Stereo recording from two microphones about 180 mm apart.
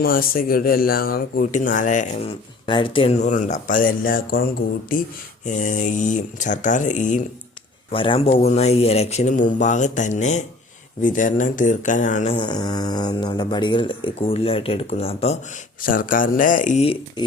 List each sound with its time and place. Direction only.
0.0 s speech: 55° left (ahead or behind)
2.6 s speech: 30° left (ahead or behind); by 4.4 s 55° left (ahead or behind)
5.5 s speech: 45° left (ahead or behind)
7.9 s speech: 30° left (ahead or behind)
12.4 s speech: 25° left (ahead or behind)
15.8 s speech: 50° left (ahead or behind); by 17.2 s 30° left (ahead or behind)